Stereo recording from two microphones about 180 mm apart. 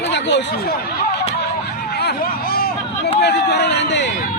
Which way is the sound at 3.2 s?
65° left (ahead or behind).